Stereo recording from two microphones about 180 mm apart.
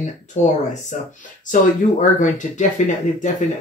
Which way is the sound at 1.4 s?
45° left (ahead or behind).